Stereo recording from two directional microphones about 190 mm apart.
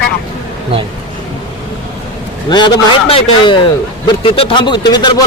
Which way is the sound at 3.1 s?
25° left (ahead or behind).